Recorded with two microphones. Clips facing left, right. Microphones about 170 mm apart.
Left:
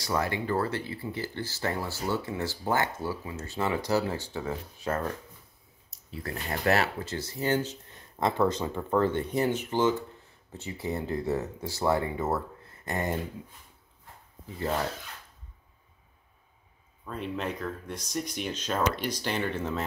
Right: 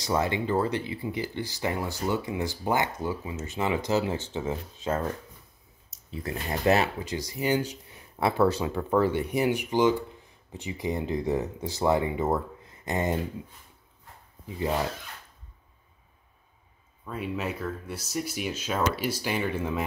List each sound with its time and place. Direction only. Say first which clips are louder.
0.0 s speech: right 3 dB; 20° right (ahead or behind)
14.4 s speech: right 2 dB; 15° right (ahead or behind)
17.0 s speech: right 1 dB; 5° right (ahead or behind)